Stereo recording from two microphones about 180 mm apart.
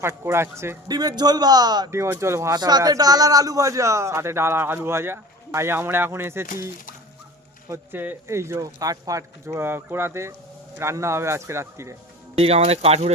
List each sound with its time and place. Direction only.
0.0 s a man's voice: 15° right (ahead or behind)
7.7 s a man's voice: 15° right (ahead or behind)
12.4 s speech: 35° right (ahead or behind)